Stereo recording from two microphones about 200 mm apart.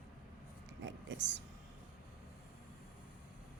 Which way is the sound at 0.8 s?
60° right (ahead or behind).